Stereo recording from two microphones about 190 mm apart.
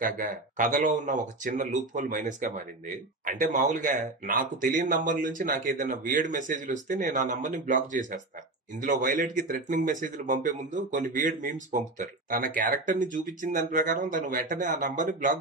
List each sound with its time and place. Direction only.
0.0 s speech: 45° right (ahead or behind)